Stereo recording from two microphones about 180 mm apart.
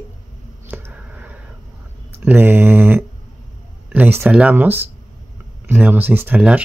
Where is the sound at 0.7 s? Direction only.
10° right (ahead or behind).